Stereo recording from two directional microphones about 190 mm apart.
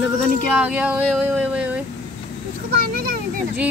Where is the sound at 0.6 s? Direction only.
5° right (ahead or behind).